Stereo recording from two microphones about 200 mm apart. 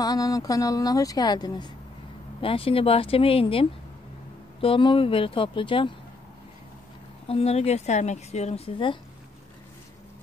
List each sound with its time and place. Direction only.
0.0 s speech: 20° left (ahead or behind)
7.2 s a woman's voice: 30° left (ahead or behind)